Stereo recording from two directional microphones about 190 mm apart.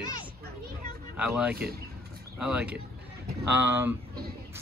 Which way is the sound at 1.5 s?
55° right (ahead or behind).